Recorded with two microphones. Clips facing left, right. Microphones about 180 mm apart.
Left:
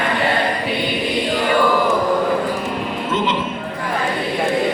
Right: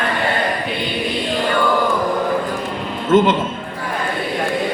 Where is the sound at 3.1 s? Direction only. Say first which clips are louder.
Right 9 dB; 50° right (ahead or behind).